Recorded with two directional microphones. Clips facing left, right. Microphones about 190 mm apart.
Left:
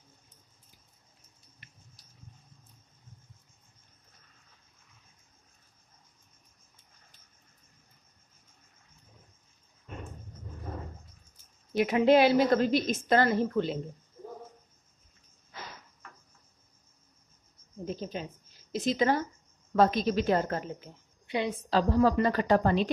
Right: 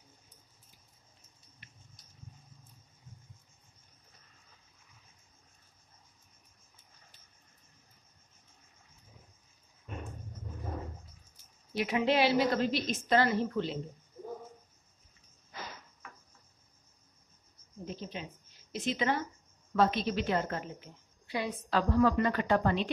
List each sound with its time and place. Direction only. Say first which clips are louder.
11.7 s a woman's voice: left 7 dB; 50° left (ahead or behind)
17.8 s a sound: left 5 dB; 40° left (ahead or behind)
18.7 s a woman's voice: left 5 dB; 40° left (ahead or behind)
21.3 s a woman's voice: left 4 dB; 25° left (ahead or behind)